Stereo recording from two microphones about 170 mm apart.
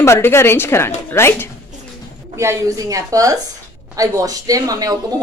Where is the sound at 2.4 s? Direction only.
20° right (ahead or behind).